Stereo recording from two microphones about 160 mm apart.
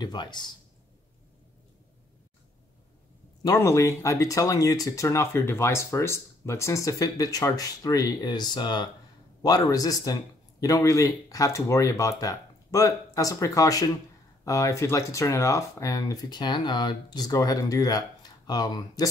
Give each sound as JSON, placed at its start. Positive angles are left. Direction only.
{"t": 0.0, "sound": "speech", "side_deg": 30}
{"t": 3.4, "sound": "speech", "side_deg": 15}